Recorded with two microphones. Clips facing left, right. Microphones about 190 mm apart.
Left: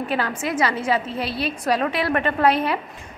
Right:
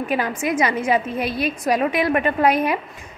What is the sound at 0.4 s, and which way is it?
A woman's voice, 15° right (ahead or behind).